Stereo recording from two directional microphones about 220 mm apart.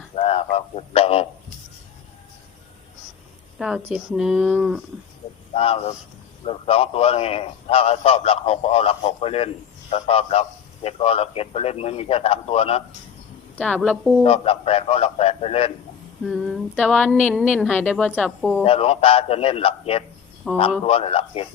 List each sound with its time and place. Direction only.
0.2 s a sound: 25° left (ahead or behind)
3.6 s speech: centre (ahead or behind)
5.2 s a sound: 25° left (ahead or behind)
5.5 s a man's voice: 25° left (ahead or behind)
14.3 s a man's voice: 25° left (ahead or behind)
16.2 s speech: centre (ahead or behind)
18.6 s a man's voice: 25° left (ahead or behind)
20.4 s speech: centre (ahead or behind)
20.8 s a man's voice: 25° left (ahead or behind)